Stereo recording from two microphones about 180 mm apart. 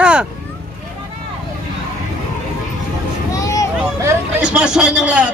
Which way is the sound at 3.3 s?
20° left (ahead or behind).